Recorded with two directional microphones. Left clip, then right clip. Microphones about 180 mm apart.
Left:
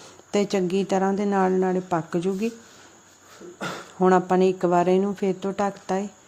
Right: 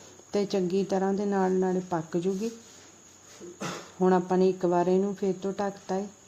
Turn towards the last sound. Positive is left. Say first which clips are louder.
# left 5 dB
turn(degrees=20)  # may be behind; listen again after turning